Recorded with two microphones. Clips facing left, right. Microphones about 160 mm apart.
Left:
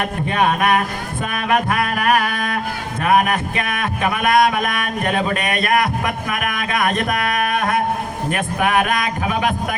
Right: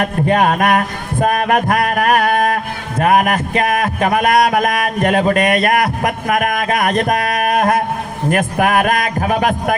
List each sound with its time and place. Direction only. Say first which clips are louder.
0.3 s a man's voice: right 3 dB; 45° right (ahead or behind)
1.2 s a sound: right 5 dB; 40° right (ahead or behind)
3.0 s a man's voice: right 3 dB; 40° right (ahead or behind)